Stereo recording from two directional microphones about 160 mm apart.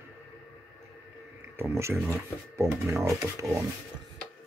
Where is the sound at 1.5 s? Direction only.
15° right (ahead or behind).